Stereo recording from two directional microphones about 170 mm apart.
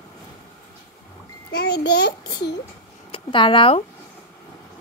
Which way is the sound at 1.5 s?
90° left.